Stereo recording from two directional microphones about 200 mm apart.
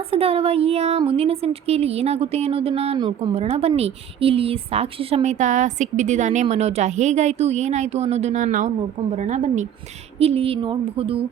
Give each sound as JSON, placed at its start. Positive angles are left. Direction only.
{"t": 0.1, "sound": "a woman's voice", "side_deg": -30}